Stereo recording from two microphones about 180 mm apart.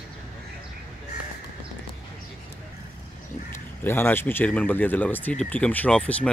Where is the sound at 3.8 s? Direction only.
10° left (ahead or behind).